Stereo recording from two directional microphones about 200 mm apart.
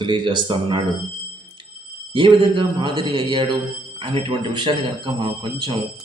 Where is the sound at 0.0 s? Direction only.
20° right (ahead or behind).